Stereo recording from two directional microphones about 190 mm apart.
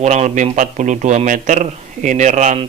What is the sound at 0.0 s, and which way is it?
A man's voice, 35° right (ahead or behind).